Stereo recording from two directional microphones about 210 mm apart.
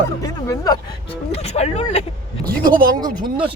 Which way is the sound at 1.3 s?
30° left (ahead or behind).